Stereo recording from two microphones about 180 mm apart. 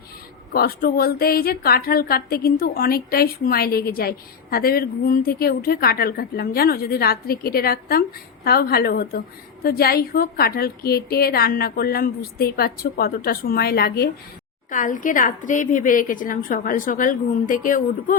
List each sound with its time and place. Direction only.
0.5 s a woman's voice: 55° left (ahead or behind)
14.7 s a woman's voice: 45° left (ahead or behind)